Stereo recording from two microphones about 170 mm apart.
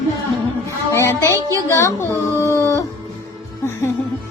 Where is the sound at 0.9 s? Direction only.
15° left (ahead or behind).